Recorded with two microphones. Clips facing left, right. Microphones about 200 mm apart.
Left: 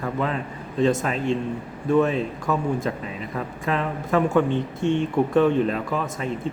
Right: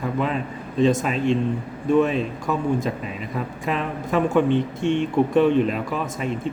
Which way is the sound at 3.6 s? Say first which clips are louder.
Left 2 dB; 15° right (ahead or behind).